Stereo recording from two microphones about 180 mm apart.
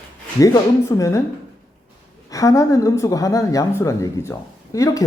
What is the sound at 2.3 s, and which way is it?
Speech, 20° left (ahead or behind).